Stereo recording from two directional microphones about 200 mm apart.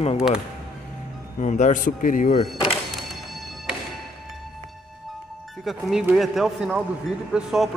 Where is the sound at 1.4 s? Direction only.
40° left (ahead or behind).